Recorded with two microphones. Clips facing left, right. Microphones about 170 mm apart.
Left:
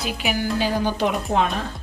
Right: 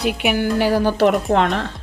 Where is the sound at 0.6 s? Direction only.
75° right (ahead or behind).